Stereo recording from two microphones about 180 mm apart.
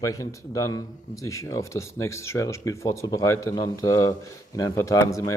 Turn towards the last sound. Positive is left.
turn(degrees=15)  # may be behind; listen again after turning